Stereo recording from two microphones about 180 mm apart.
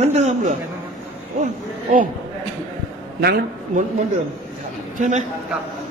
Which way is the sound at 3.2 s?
60° right (ahead or behind).